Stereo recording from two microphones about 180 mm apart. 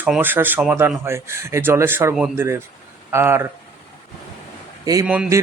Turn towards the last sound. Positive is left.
turn(degrees=-10)  # may be behind; listen again after turning